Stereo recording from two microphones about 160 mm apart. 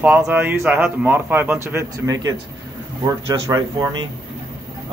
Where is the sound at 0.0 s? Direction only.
10° right (ahead or behind).